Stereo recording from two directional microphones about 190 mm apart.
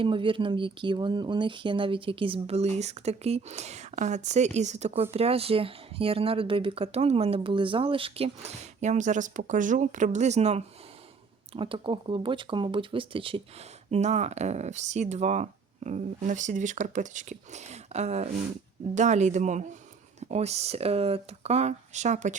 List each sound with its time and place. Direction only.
0.0 s speech: 25° right (ahead or behind)